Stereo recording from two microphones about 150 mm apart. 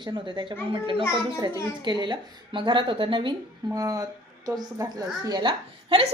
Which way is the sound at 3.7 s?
25° right (ahead or behind).